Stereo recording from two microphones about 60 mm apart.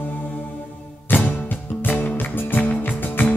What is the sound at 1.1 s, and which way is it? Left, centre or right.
Music, left.